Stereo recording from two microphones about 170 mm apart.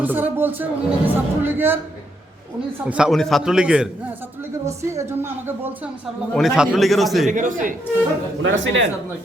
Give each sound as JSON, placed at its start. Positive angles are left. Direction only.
{"t": 0.0, "sound": "speech", "side_deg": -10}
{"t": 2.8, "sound": "a man's voice", "side_deg": -5}
{"t": 4.6, "sound": "speech", "side_deg": -15}
{"t": 6.3, "sound": "a man's voice", "side_deg": 0}
{"t": 7.3, "sound": "a man's voice", "side_deg": -50}
{"t": 8.4, "sound": "speech", "side_deg": -90}